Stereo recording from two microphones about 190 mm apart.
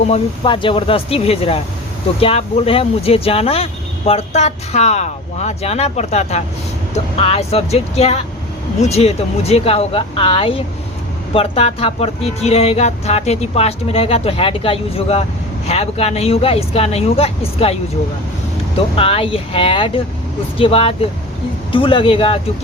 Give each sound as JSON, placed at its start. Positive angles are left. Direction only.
{"t": 0.0, "sound": "speech", "side_deg": 30}
{"t": 18.9, "sound": "speech", "side_deg": 30}